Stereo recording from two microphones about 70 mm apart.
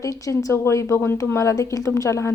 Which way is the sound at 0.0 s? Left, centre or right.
Left.